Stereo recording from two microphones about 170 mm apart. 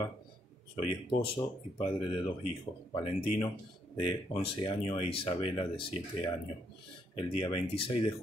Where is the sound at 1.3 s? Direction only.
35° left (ahead or behind).